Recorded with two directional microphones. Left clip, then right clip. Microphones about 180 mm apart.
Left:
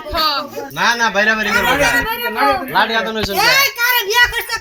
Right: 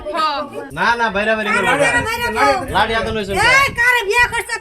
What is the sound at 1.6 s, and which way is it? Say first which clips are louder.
Child singing: even; 25° right (ahead or behind).